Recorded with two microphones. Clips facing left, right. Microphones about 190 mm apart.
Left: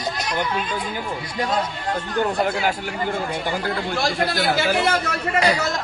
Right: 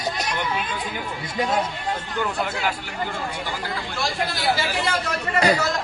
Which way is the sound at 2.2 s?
45° left (ahead or behind).